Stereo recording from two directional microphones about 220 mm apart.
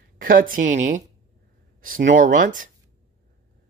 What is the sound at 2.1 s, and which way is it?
Speech, 35° right (ahead or behind).